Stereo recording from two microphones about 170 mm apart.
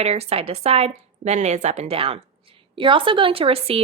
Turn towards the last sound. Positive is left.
turn(degrees=-35)  # may be behind; listen again after turning